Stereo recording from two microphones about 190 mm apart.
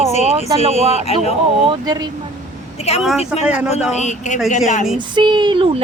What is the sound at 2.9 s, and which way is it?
Speech, 35° left (ahead or behind).